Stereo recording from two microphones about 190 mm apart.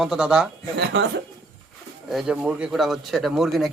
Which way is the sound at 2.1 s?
5° right (ahead or behind).